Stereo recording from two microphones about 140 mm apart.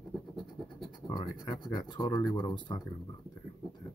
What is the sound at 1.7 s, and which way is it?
Speech, 35° left (ahead or behind).